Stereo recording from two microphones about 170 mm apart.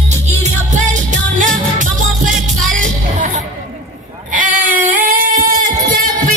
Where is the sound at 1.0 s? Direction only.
50° right (ahead or behind).